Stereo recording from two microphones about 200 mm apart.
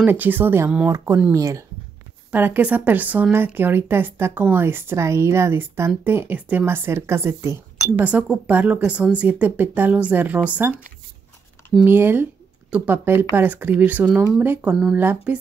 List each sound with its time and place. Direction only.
0.0 s speech: 10° right (ahead or behind)
11.8 s speech: 10° right (ahead or behind)